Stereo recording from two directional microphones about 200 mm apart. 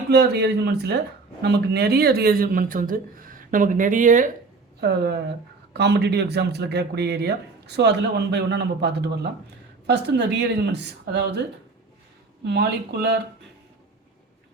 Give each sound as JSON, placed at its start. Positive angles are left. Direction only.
{"t": 0.1, "sound": "speech", "side_deg": -55}
{"t": 4.8, "sound": "speech", "side_deg": -55}
{"t": 12.5, "sound": "speech", "side_deg": -60}